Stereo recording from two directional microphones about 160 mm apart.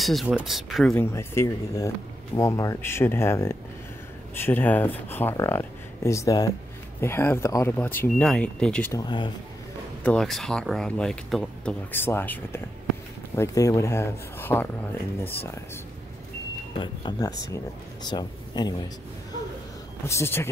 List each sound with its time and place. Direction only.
0.0 s speech: centre (ahead or behind)
0.9 s speech: 15° left (ahead or behind)
8.9 s speech: 25° left (ahead or behind)
10.0 s speech: 5° left (ahead or behind)
11.9 s speech: 15° left (ahead or behind)
16.7 s speech: 30° left (ahead or behind)
20.1 s speech: 15° left (ahead or behind)